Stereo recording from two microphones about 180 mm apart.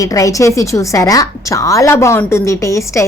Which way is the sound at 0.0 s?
20° left (ahead or behind).